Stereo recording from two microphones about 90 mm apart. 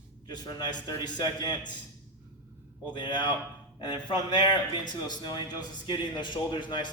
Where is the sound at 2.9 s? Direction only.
60° left (ahead or behind).